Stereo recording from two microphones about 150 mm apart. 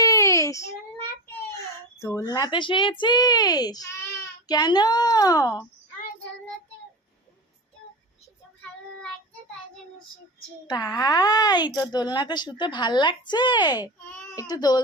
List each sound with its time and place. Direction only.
0.0 s child singing: 20° left (ahead or behind)
2.0 s a child's voice: 20° left (ahead or behind)
10.7 s a child's voice: 25° left (ahead or behind)